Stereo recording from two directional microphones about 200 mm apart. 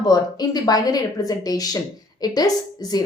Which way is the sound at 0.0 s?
20° left (ahead or behind).